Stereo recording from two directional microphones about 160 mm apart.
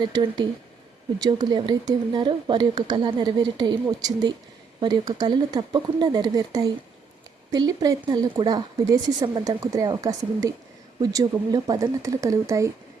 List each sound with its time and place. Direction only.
0.0 s speech: 25° right (ahead or behind)